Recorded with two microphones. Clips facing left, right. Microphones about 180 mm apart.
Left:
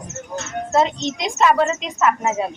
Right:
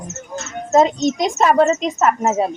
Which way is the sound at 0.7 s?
40° right (ahead or behind).